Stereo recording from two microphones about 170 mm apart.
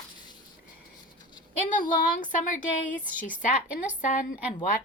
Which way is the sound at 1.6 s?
50° left (ahead or behind).